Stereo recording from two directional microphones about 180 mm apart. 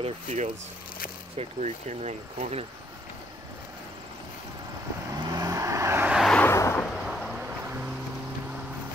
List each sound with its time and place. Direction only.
0.0 s speech: 40° right (ahead or behind)
5.1 s vehicle: 20° right (ahead or behind); by 6.4 s centre (ahead or behind)
6.4 s vehicle: 15° left (ahead or behind)
6.9 s a sound: centre (ahead or behind)